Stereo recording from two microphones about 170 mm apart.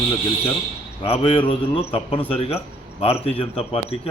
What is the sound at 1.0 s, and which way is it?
A man's voice, 35° left (ahead or behind).